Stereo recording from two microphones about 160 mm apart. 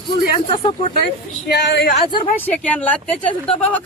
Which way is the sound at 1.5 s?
90° left.